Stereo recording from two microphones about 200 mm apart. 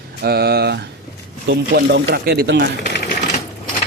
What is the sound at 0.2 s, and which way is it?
Speech, 50° right (ahead or behind).